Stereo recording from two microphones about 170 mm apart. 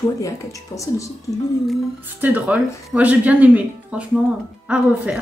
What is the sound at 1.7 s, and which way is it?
Speech, 10° right (ahead or behind).